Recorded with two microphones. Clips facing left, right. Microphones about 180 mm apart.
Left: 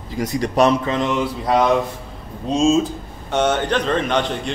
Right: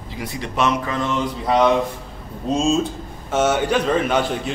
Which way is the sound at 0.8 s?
20° left (ahead or behind).